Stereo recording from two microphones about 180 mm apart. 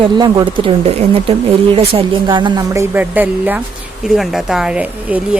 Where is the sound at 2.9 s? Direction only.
10° right (ahead or behind).